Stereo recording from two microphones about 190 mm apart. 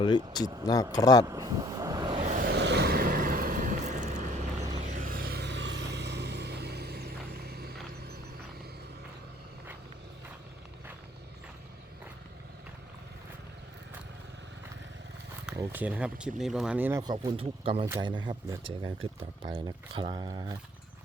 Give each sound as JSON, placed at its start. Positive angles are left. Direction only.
{"t": 0.6, "sound": "speech", "side_deg": 20}
{"t": 1.3, "sound": "vehicle", "side_deg": -20}
{"t": 2.2, "sound": "a sound", "side_deg": -40}
{"t": 2.5, "sound": "vehicle", "side_deg": -65}
{"t": 15.5, "sound": "speech", "side_deg": -10}
{"t": 17.0, "sound": "speech", "side_deg": -20}